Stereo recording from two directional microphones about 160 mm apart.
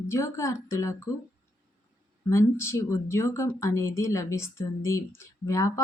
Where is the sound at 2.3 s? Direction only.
15° left (ahead or behind).